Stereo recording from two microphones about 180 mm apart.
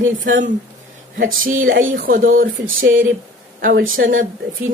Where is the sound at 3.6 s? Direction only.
50° right (ahead or behind).